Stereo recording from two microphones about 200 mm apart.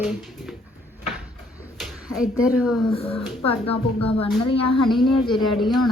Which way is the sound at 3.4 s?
30° left (ahead or behind).